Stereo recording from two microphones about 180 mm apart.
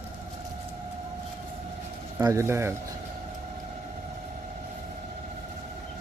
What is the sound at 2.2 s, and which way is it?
Speech, 15° right (ahead or behind).